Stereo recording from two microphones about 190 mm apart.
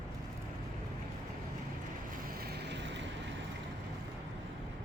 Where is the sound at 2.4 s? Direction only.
60° right (ahead or behind).